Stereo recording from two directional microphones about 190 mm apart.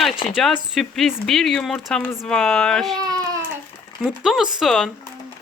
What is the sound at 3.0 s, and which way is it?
Baby cry, 20° right (ahead or behind).